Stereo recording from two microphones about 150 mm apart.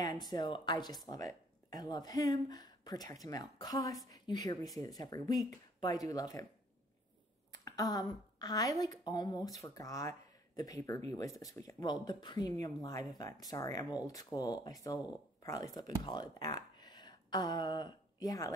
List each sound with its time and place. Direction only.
0.3 s speech: 30° left (ahead or behind)
7.5 s a woman's voice: 25° left (ahead or behind)